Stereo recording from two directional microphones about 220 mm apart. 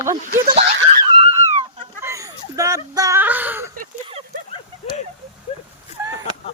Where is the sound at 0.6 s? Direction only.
30° right (ahead or behind).